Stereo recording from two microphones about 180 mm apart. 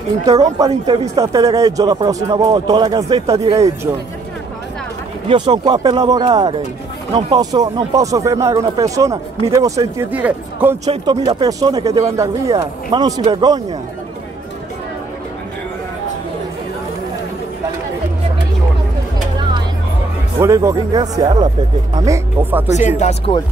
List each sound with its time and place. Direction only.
0.3 s speech: 20° right (ahead or behind)
5.3 s speech: 25° right (ahead or behind); by 10.8 s 10° right (ahead or behind)
10.9 s speech: 25° right (ahead or behind)
20.3 s speech: 15° right (ahead or behind)
22.7 s speech: 40° left (ahead or behind)